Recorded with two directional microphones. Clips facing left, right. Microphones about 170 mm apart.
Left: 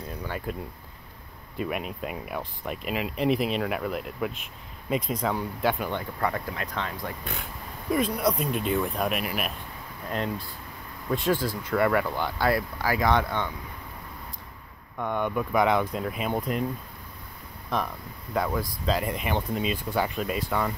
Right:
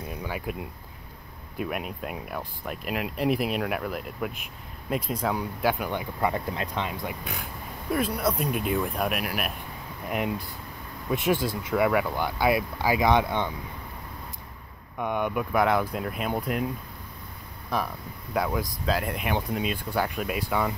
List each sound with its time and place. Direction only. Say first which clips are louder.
0.1 s speech: even; 10° right (ahead or behind)
1.6 s speech: left 1 dB; 5° right (ahead or behind)
7.9 s speech: left 1 dB; 5° right (ahead or behind); by 11.5 s 20° right (ahead or behind)
11.7 s speech: even; 5° right (ahead or behind)
15.0 s speech: even; 10° right (ahead or behind)
18.3 s speech: even; 5° right (ahead or behind)